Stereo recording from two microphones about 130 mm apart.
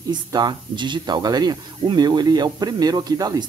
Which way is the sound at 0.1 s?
35° right (ahead or behind).